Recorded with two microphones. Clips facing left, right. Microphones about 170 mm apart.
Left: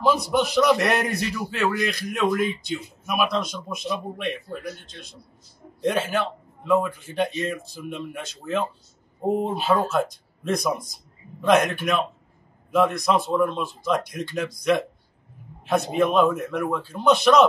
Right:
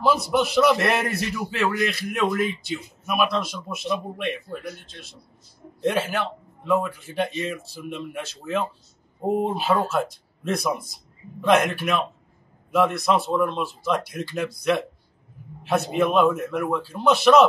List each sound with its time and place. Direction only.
0.0 s a man's voice: 5° right (ahead or behind)